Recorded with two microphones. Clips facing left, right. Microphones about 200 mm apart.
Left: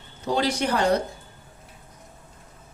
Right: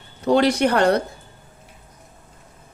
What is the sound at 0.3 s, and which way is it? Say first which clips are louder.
Speech: right 7 dB; 65° right (ahead or behind).